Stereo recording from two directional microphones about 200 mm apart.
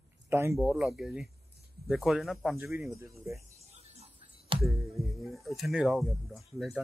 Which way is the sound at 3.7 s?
30° right (ahead or behind).